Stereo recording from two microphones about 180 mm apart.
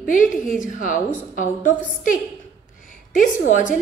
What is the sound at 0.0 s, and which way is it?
A woman's voice, 45° left (ahead or behind).